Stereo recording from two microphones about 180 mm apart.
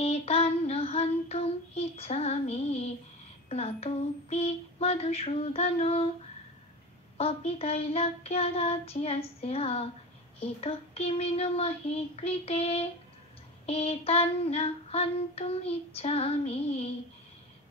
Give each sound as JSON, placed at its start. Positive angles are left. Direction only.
{"t": 0.0, "sound": "child singing", "side_deg": 35}
{"t": 3.4, "sound": "female singing", "side_deg": 35}
{"t": 7.2, "sound": "female singing", "side_deg": 35}